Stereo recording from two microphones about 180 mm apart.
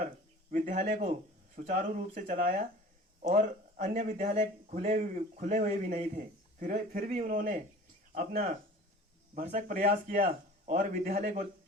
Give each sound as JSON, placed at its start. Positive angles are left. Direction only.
{"t": 0.5, "sound": "speech", "side_deg": -45}